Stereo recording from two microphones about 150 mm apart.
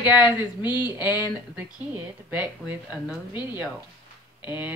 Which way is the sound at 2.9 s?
10° right (ahead or behind).